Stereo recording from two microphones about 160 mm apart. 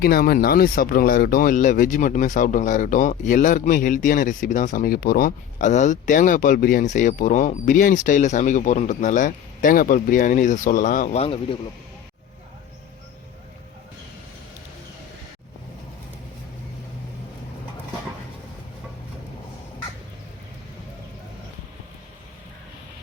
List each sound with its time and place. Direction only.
0.0 s speech: 70° left (ahead or behind)
11.2 s a man's voice: 35° left (ahead or behind)